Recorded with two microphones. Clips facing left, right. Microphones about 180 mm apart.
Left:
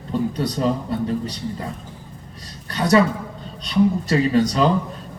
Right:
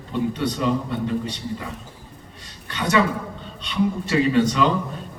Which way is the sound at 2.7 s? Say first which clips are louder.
Left 4 dB; 40° left (ahead or behind).